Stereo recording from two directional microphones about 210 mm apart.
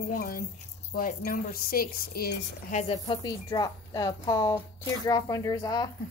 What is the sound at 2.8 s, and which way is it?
A woman's voice, 25° left (ahead or behind).